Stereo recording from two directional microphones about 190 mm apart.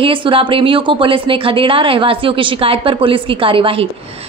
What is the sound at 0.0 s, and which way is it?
A woman's voice, 25° right (ahead or behind).